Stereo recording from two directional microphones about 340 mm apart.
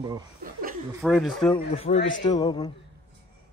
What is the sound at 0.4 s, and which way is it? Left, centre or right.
Chuckle, right.